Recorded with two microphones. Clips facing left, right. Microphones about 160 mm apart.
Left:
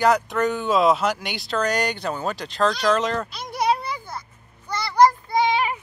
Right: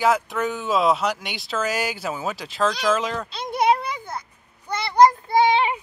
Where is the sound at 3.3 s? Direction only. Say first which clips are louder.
Right 3 dB; 20° right (ahead or behind).